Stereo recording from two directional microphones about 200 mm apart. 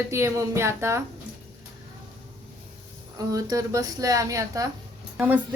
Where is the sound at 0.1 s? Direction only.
15° right (ahead or behind).